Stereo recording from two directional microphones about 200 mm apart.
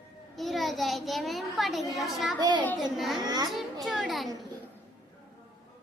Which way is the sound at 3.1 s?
20° right (ahead or behind).